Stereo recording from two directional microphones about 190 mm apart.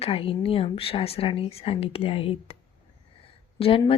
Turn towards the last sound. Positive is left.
turn(degrees=30)  # may be behind; listen again after turning